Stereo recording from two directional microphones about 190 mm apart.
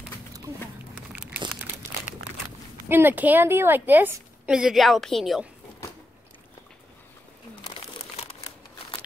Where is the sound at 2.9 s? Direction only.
10° right (ahead or behind).